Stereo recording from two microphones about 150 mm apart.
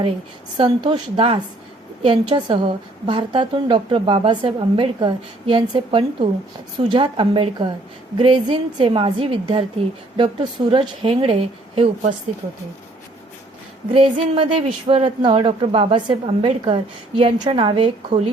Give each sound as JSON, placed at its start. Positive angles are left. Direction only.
{"t": 0.5, "sound": "a woman's voice", "side_deg": -30}
{"t": 13.9, "sound": "a woman's voice", "side_deg": -40}